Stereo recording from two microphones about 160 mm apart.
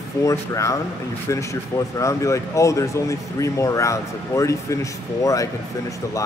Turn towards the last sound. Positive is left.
turn(degrees=20)  # may be behind; listen again after turning